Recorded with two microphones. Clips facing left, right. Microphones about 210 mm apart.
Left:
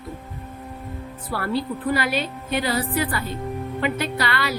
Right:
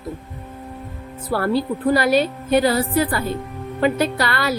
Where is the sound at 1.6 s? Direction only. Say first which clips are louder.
Right 3 dB; 40° right (ahead or behind).